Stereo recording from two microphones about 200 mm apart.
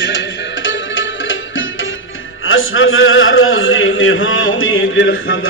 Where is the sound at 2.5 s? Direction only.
80° left.